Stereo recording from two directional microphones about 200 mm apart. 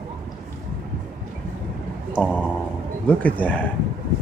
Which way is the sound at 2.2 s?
5° left (ahead or behind).